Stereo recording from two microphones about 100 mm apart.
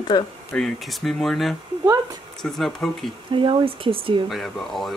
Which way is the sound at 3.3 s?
55° right (ahead or behind).